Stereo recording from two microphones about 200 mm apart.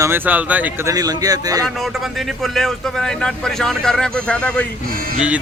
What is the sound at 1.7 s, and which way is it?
A man's voice, centre (ahead or behind).